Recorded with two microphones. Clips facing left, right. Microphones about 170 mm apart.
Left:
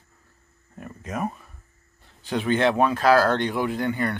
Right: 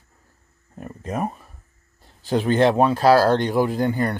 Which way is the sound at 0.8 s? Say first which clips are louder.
Right 3 dB; 30° right (ahead or behind).